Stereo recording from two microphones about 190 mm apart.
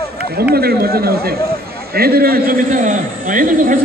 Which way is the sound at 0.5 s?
55° right (ahead or behind).